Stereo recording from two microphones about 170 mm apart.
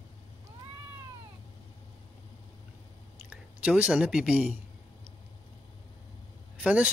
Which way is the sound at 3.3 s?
10° right (ahead or behind).